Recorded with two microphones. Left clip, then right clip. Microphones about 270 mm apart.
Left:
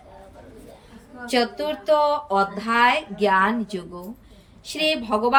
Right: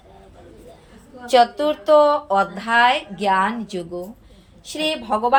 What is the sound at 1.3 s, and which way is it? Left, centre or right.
A woman's voice, centre.